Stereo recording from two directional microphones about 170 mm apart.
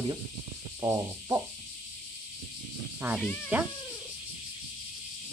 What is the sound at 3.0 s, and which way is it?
Speech, 15° right (ahead or behind).